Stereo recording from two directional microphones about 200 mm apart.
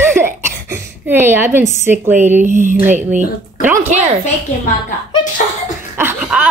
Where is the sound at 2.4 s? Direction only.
40° right (ahead or behind).